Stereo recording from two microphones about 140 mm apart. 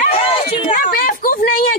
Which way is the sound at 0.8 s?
90° left.